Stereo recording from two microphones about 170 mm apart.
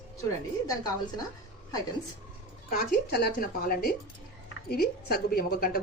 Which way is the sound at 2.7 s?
60° left (ahead or behind).